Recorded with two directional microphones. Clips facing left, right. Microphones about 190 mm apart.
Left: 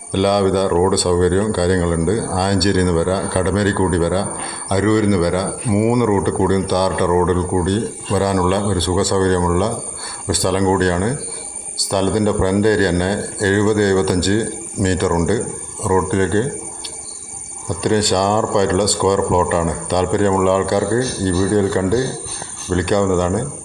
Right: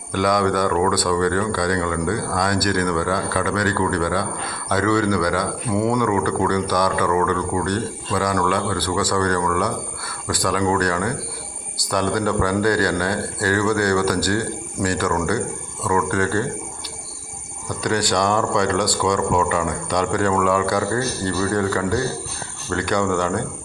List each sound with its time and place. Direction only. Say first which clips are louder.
0.1 s a man's voice: left 4 dB; 25° left (ahead or behind)
17.7 s a man's voice: left 5 dB; 25° left (ahead or behind)